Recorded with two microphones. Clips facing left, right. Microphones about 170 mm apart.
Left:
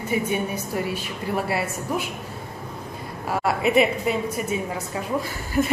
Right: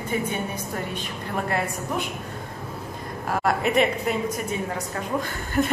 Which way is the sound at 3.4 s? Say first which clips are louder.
Left 2 dB; 5° left (ahead or behind).